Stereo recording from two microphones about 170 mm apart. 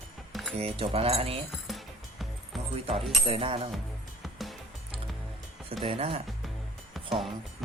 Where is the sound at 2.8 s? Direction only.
35° right (ahead or behind).